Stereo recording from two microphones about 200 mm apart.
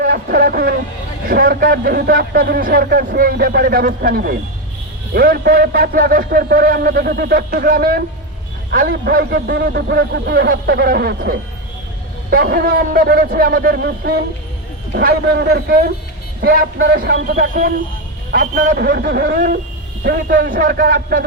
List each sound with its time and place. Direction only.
0.0 s speech: 50° right (ahead or behind)
17.5 s speech: 45° right (ahead or behind)